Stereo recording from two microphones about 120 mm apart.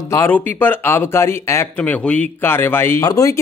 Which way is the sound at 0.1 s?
20° left (ahead or behind).